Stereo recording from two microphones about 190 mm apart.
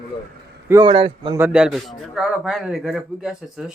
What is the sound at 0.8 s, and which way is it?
Speech, 25° right (ahead or behind).